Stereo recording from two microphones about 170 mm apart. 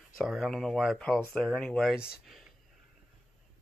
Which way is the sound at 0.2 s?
Centre (ahead or behind).